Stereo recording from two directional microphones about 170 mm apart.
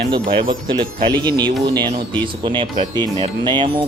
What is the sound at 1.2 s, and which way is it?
A man's voice, 25° right (ahead or behind).